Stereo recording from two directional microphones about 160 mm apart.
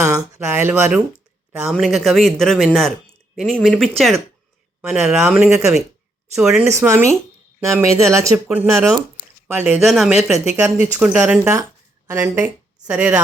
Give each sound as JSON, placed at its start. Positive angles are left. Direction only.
{"t": 0.0, "sound": "speech", "side_deg": -5}
{"t": 6.7, "sound": "a woman's voice", "side_deg": -15}
{"t": 9.6, "sound": "speech", "side_deg": -5}